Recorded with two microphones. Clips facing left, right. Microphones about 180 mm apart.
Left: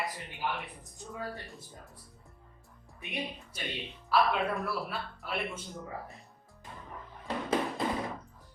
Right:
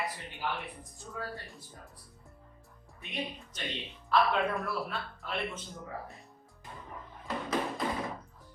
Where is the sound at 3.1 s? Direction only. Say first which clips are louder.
Even; 10° left (ahead or behind).